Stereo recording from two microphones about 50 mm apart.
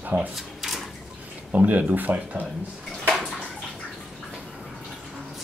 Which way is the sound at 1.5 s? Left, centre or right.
Right.